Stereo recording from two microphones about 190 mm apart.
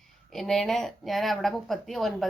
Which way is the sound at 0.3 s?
Centre (ahead or behind).